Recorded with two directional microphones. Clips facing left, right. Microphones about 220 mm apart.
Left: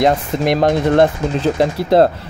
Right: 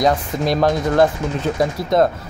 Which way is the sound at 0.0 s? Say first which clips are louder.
Left 3 dB; 25° left (ahead or behind).